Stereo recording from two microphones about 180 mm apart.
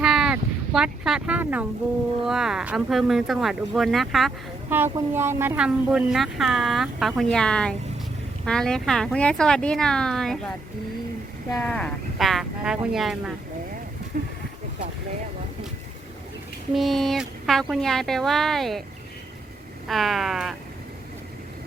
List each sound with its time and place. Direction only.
0.0 s a sound: 5° right (ahead or behind)
2.2 s speech: centre (ahead or behind)
4.7 s speech: 10° right (ahead or behind)
11.5 s speech: 5° left (ahead or behind)
14.1 s speech: 55° right (ahead or behind)
16.7 s speech: centre (ahead or behind)
19.9 s speech: centre (ahead or behind)